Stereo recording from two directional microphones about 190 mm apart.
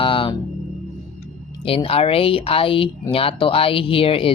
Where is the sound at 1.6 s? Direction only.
30° left (ahead or behind).